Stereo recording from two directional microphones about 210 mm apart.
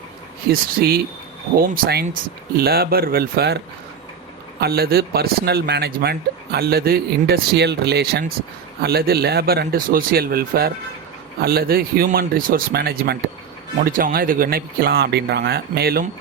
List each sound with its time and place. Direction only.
0.5 s speech: 45° right (ahead or behind)
4.6 s speech: 45° right (ahead or behind)